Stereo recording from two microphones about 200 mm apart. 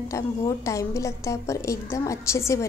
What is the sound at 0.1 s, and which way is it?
A woman's voice, 15° left (ahead or behind).